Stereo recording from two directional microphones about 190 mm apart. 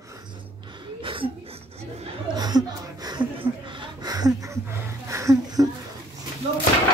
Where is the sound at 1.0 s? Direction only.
25° right (ahead or behind).